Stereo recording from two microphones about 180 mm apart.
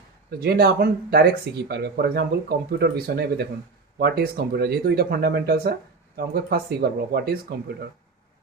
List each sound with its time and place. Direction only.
0.3 s speech: 60° right (ahead or behind)